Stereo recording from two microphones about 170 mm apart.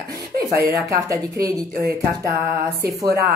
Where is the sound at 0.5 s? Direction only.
20° right (ahead or behind).